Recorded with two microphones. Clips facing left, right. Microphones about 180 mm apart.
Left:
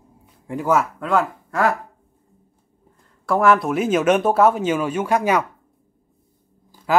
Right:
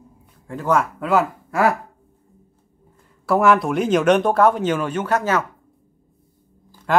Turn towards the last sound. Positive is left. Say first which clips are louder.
# even
turn(degrees=5)  # may be behind; listen again after turning